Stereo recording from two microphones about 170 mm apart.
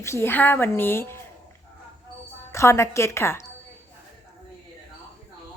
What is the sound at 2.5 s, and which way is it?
Speech, 15° left (ahead or behind).